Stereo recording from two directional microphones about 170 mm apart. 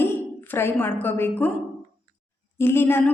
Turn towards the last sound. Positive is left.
turn(degrees=10)  # may be behind; listen again after turning